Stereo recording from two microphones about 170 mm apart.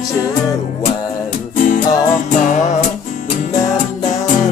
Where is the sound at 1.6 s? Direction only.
50° left (ahead or behind).